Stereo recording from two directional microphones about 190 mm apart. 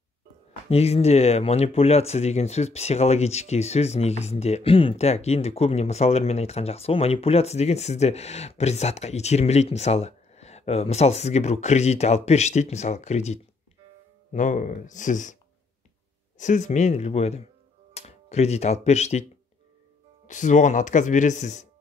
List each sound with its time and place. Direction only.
0.7 s speech: 35° left (ahead or behind)
16.3 s speech: 40° left (ahead or behind)
20.2 s speech: 40° left (ahead or behind)